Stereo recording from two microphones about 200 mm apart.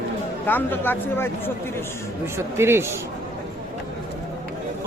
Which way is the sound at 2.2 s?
10° right (ahead or behind).